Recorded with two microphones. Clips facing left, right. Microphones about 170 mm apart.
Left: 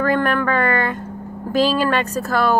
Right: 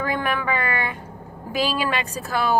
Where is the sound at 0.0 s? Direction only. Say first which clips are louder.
Left 6 dB; 10° right (ahead or behind).